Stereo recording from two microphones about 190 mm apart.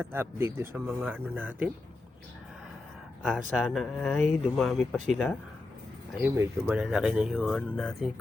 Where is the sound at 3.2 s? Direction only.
5° right (ahead or behind).